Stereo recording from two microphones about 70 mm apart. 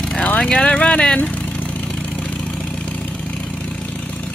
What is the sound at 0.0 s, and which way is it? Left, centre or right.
Vehicle, centre.